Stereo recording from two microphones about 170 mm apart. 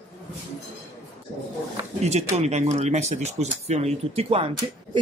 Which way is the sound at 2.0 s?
40° right (ahead or behind).